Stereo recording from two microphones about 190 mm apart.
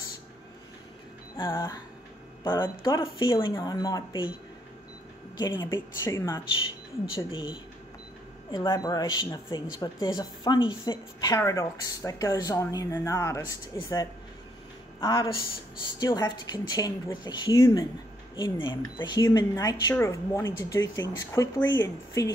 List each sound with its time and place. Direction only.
2.5 s a woman's voice: 25° left (ahead or behind)
5.4 s a woman's voice: 20° left (ahead or behind)
7.3 s a woman's voice: 25° left (ahead or behind)